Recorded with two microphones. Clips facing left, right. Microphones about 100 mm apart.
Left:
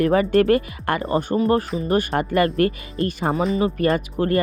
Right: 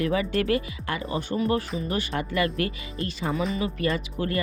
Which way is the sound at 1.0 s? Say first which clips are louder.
Left 6 dB; 40° left (ahead or behind).